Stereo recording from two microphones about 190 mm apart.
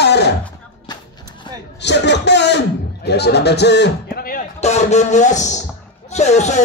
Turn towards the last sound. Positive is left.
turn(degrees=35)  # may be behind; listen again after turning